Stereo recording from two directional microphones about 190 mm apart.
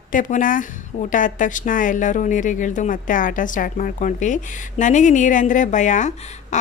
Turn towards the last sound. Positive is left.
turn(degrees=40)  # may be behind; listen again after turning